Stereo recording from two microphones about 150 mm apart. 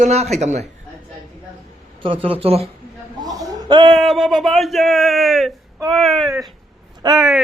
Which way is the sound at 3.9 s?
Centre (ahead or behind).